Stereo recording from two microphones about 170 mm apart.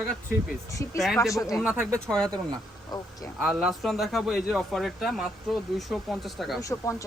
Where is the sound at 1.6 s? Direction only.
10° right (ahead or behind).